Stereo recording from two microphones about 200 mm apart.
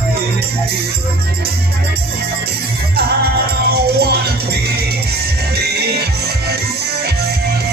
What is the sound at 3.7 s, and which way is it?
Music, 50° right (ahead or behind).